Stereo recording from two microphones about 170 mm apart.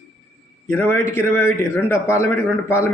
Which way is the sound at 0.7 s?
15° left (ahead or behind).